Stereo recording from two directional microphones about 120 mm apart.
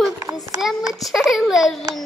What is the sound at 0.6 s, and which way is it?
Speech, 5° right (ahead or behind).